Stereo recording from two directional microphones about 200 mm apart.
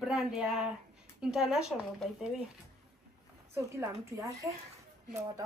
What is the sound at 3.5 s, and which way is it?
Speech, 15° right (ahead or behind).